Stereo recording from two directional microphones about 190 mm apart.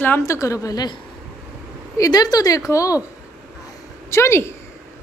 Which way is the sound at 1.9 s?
20° left (ahead or behind).